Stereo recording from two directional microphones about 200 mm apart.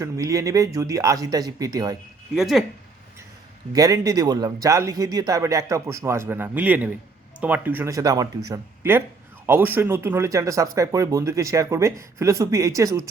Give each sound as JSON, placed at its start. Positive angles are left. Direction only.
{"t": 0.0, "sound": "speech", "side_deg": -15}
{"t": 2.3, "sound": "speech", "side_deg": 0}
{"t": 3.7, "sound": "speech", "side_deg": -15}